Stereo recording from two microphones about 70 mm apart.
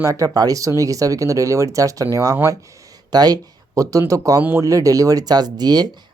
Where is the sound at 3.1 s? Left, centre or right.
Right.